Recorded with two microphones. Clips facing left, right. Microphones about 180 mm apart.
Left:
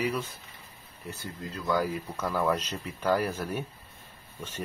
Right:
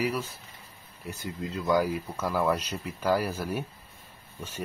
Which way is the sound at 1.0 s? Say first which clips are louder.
Right 3 dB; 20° right (ahead or behind).